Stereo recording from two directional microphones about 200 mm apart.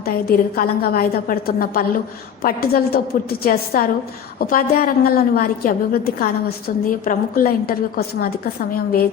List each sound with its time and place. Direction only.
0.0 s a woman's voice: 50° left (ahead or behind)